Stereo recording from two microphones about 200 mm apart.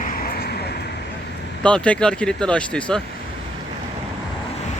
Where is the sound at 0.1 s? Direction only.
45° left (ahead or behind).